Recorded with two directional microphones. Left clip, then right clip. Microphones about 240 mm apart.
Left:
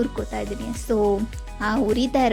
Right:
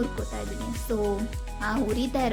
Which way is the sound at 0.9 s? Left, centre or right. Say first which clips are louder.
Left 7 dB; left.